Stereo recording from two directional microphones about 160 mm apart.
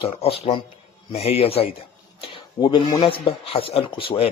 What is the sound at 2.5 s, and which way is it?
A man's voice, 25° left (ahead or behind).